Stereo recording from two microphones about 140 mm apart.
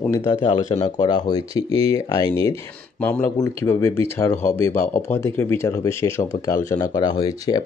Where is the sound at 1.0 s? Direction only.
35° left (ahead or behind).